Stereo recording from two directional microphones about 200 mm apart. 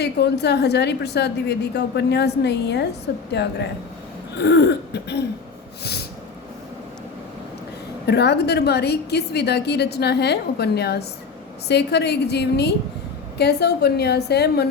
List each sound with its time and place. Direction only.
0.0 s a woman's voice: 55° left (ahead or behind)
4.4 s a woman's voice: 60° left (ahead or behind)
8.0 s a woman's voice: 55° left (ahead or behind)